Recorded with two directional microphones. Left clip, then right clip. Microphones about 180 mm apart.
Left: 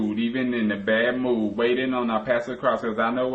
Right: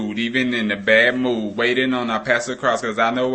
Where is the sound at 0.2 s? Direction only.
15° right (ahead or behind).